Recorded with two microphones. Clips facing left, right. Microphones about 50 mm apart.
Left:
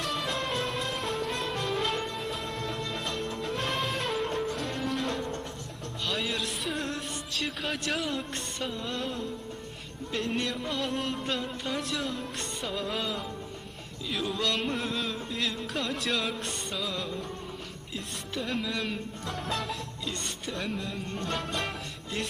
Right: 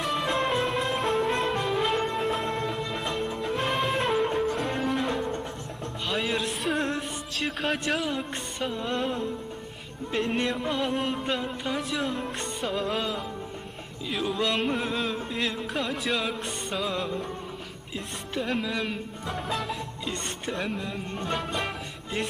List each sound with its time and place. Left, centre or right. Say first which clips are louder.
0.0 s music: right 5 dB; centre
8.2 s music: right 3 dB; centre
10.2 s music: right 4 dB; centre
10.8 s music: right 4 dB; centre